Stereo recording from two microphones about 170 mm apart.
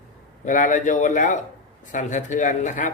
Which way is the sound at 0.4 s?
50° left (ahead or behind).